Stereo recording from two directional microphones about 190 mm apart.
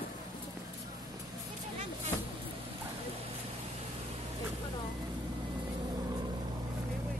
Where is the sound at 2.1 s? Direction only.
20° left (ahead or behind).